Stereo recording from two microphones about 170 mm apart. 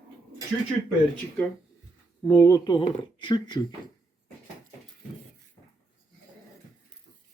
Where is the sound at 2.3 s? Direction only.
20° left (ahead or behind).